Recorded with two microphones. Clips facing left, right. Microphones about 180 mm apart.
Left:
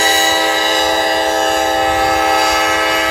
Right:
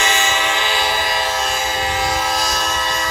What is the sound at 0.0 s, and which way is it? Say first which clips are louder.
Train: left 5 dB; 35° left (ahead or behind).